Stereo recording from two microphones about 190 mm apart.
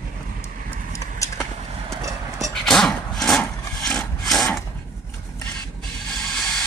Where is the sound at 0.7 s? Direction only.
15° left (ahead or behind).